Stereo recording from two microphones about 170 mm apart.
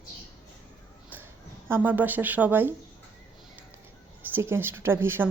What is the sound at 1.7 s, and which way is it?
Speech, 10° right (ahead or behind).